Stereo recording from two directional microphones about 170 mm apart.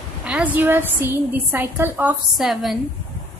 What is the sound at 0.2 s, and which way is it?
A woman's voice, 5° right (ahead or behind).